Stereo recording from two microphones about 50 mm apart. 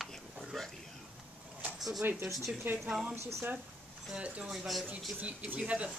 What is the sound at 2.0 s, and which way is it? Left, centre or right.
Speech, right.